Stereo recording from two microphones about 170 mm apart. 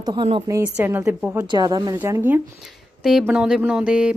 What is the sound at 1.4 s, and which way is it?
Speech, 25° right (ahead or behind).